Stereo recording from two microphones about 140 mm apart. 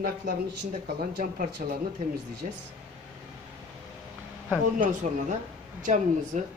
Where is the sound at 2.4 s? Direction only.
60° right (ahead or behind).